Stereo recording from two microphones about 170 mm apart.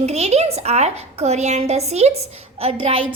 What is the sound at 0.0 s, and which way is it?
A woman's voice, 40° right (ahead or behind).